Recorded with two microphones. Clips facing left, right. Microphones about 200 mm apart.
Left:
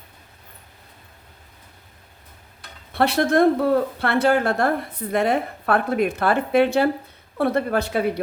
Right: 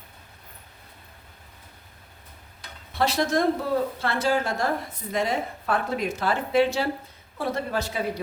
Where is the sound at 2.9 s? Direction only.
60° left (ahead or behind).